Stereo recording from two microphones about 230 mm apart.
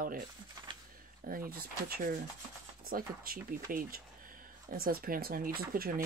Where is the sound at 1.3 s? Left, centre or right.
Right.